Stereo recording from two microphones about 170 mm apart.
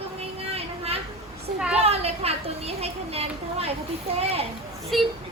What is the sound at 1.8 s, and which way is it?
A child's voice, 35° right (ahead or behind).